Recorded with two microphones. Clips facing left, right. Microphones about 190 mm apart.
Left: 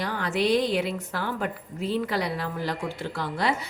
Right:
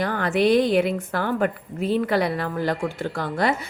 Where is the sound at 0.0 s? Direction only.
55° right (ahead or behind).